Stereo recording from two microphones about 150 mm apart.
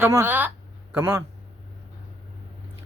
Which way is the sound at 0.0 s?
15° right (ahead or behind).